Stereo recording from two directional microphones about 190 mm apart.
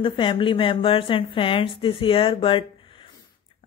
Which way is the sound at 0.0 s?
25° left (ahead or behind).